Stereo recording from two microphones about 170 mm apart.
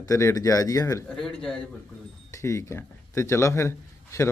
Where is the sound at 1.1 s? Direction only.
5° left (ahead or behind).